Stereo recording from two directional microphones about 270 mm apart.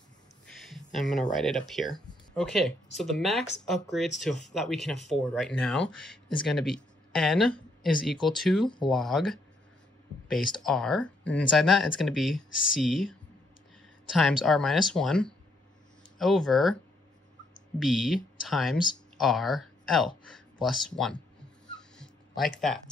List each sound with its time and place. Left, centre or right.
0.5 s speech: centre
8.6 s speech: centre
8.9 s speech: centre
10.6 s speech: centre
14.1 s speech: centre
17.7 s speech: centre
21.7 s dog: centre
22.6 s speech: centre